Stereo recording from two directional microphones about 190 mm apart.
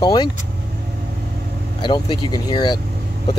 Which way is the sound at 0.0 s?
20° left (ahead or behind).